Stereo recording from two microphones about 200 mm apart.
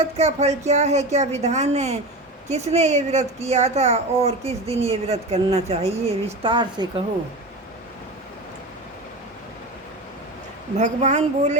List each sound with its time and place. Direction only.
0.0 s speech: 35° right (ahead or behind)
10.8 s speech: 35° right (ahead or behind)